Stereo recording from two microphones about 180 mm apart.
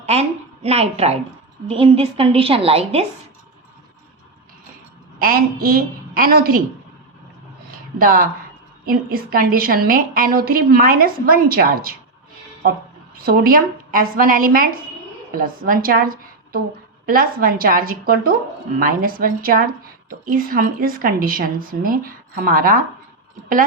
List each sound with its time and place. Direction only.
0.0 s a woman's voice: 35° right (ahead or behind)
5.2 s a woman's voice: 55° right (ahead or behind)
7.9 s a woman's voice: 50° right (ahead or behind)
13.1 s a woman's voice: 55° right (ahead or behind)